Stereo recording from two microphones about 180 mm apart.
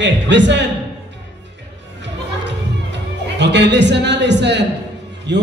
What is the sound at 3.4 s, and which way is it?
A man's voice, 75° right (ahead or behind).